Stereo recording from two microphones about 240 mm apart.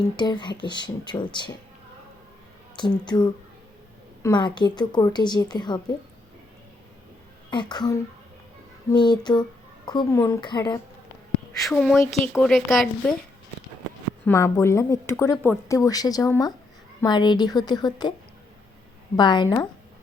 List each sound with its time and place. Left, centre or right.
0.2 s speech: centre
2.7 s speech: centre
7.5 s speech: centre
11.6 s a woman's voice: centre
14.3 s speech: centre
19.1 s speech: centre